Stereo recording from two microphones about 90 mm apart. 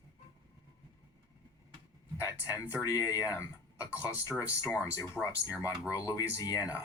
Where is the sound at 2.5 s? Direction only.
35° left (ahead or behind).